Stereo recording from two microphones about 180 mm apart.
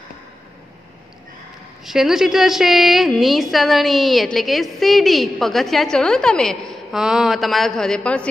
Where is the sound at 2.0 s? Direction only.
Centre (ahead or behind).